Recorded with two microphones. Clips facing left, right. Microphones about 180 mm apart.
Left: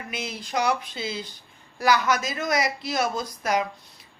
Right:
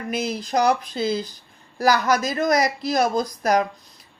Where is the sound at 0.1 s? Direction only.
40° right (ahead or behind).